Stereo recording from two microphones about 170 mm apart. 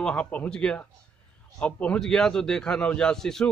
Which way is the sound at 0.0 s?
5° left (ahead or behind).